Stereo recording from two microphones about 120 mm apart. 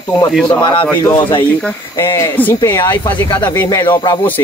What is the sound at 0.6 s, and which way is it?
Speech, 40° left (ahead or behind).